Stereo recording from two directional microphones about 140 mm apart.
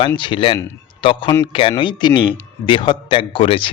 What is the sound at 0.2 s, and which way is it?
A man's voice, 35° left (ahead or behind).